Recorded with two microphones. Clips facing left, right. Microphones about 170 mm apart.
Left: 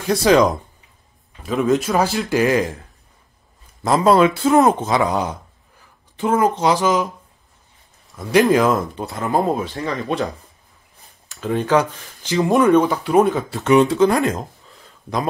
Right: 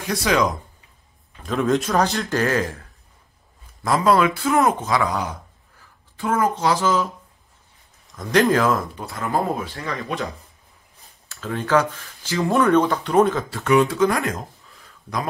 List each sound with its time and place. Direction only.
0.0 s speech: 35° left (ahead or behind)
1.4 s a man's voice: centre (ahead or behind)
3.8 s speech: 25° left (ahead or behind)
8.2 s speech: 10° left (ahead or behind)
11.2 s speech: 20° left (ahead or behind)